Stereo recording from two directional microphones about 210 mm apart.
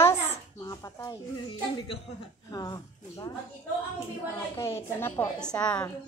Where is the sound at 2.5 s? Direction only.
15° left (ahead or behind).